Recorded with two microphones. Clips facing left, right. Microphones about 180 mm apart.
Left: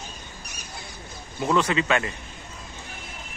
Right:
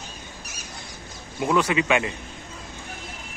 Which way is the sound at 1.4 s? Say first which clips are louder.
Right 1 dB; 10° right (ahead or behind).